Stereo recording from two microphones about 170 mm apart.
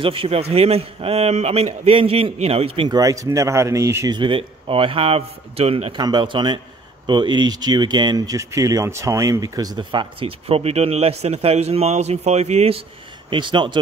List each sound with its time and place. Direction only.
0.0 s a man's voice: 35° right (ahead or behind)
3.0 s speech: 20° right (ahead or behind)